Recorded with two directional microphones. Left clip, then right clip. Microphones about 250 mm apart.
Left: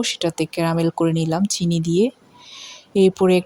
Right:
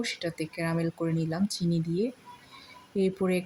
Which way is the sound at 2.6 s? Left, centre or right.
Left.